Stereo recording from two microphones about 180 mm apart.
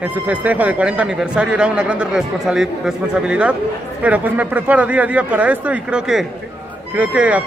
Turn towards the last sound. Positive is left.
turn(degrees=-5)  # may be behind; listen again after turning